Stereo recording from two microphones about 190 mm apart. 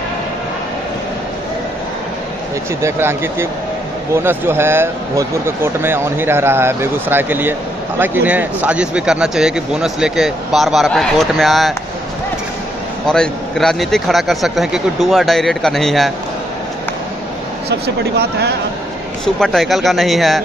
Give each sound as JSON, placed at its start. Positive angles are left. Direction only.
{"t": 2.8, "sound": "speech", "side_deg": -10}
{"t": 13.0, "sound": "speech", "side_deg": 5}
{"t": 17.6, "sound": "speech", "side_deg": -60}
{"t": 19.2, "sound": "speech", "side_deg": 0}